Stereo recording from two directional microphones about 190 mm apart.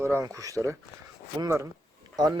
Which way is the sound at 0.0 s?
15° right (ahead or behind).